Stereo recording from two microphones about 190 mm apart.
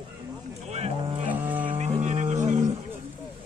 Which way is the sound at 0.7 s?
35° right (ahead or behind).